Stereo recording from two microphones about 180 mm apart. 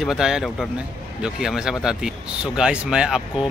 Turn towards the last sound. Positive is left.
turn(degrees=-5)  # may be behind; listen again after turning